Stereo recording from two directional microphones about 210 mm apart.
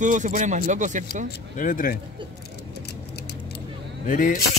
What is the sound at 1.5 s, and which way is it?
Speech, 40° left (ahead or behind).